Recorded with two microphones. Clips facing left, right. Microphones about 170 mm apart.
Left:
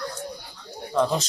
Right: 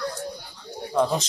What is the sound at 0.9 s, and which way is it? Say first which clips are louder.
Speech: even; 10° right (ahead or behind).